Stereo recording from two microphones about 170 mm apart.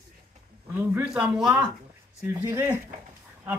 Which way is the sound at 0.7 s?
10° right (ahead or behind).